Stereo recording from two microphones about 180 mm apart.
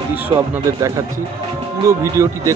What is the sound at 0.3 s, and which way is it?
A man's voice, 20° right (ahead or behind).